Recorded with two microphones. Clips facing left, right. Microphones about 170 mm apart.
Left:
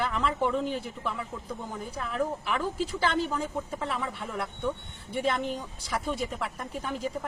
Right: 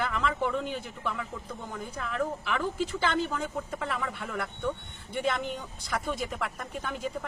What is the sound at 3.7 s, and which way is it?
Speech, centre (ahead or behind).